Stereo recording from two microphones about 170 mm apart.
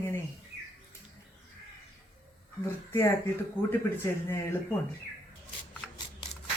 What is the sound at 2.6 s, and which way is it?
Speech, 15° left (ahead or behind).